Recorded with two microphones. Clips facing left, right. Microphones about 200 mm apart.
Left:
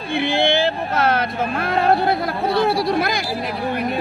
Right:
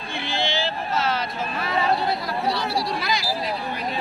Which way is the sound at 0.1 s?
55° left (ahead or behind).